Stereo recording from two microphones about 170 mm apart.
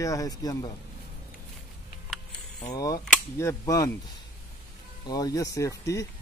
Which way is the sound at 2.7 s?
20° left (ahead or behind).